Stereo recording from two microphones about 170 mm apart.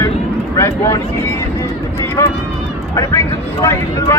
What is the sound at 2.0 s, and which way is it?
Speech, 15° left (ahead or behind).